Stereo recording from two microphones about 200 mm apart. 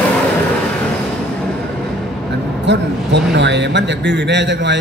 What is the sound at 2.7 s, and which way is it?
A man's voice, 60° right (ahead or behind).